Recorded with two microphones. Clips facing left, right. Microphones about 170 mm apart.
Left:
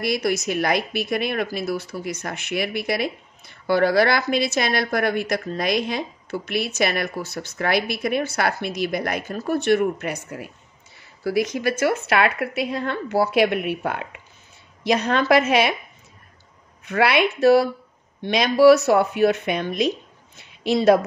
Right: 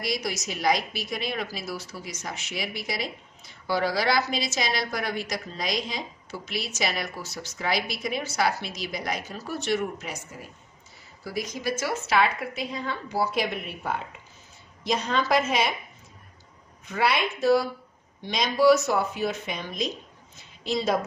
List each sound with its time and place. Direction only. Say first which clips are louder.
0.0 s a woman's voice: left 8 dB; 60° left (ahead or behind)
16.8 s speech: left 6 dB; 70° left (ahead or behind)